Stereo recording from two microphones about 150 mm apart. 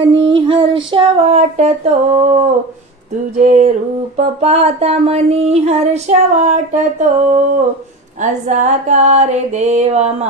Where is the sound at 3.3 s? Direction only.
55° right (ahead or behind).